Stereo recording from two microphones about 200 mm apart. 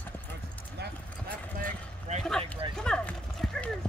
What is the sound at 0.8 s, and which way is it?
Clip-clop, 55° right (ahead or behind).